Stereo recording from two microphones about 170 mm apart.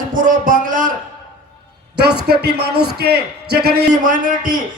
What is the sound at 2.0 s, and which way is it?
A man's voice, 70° right (ahead or behind).